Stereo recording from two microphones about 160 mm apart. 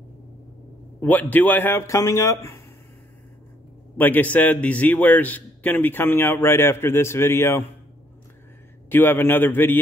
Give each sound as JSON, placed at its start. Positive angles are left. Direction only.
{"t": 1.0, "sound": "a man's voice", "side_deg": 10}
{"t": 4.0, "sound": "a man's voice", "side_deg": 10}
{"t": 8.8, "sound": "a man's voice", "side_deg": 15}